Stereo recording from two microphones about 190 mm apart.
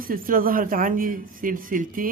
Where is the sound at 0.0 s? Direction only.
50° right (ahead or behind).